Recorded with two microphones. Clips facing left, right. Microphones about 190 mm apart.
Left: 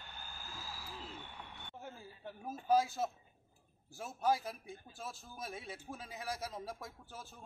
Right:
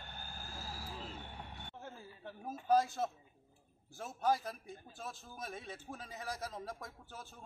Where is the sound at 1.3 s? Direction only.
35° right (ahead or behind).